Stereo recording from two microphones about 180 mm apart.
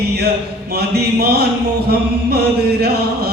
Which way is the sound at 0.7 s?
60° right (ahead or behind).